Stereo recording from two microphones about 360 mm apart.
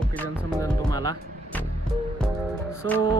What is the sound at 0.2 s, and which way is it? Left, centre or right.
Speech, centre.